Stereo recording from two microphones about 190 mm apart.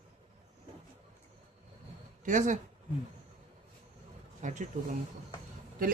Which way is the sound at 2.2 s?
40° right (ahead or behind).